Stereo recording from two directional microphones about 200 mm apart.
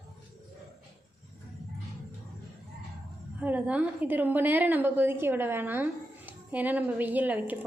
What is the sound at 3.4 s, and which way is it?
A woman's voice, 10° right (ahead or behind).